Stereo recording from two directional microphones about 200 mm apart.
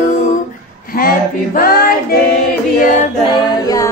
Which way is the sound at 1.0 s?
45° left (ahead or behind).